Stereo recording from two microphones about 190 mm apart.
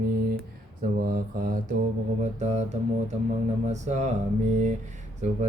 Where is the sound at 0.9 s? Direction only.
50° right (ahead or behind).